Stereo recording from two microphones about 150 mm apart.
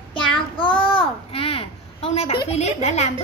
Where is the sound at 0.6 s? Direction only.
35° left (ahead or behind).